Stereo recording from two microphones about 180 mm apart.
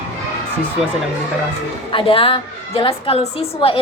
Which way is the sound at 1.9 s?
30° left (ahead or behind).